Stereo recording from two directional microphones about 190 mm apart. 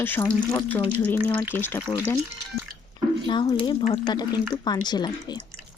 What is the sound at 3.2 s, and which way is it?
Speech, 25° left (ahead or behind).